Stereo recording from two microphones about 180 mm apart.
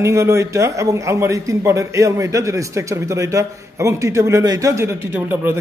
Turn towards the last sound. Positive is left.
turn(degrees=-10)  # may be behind; listen again after turning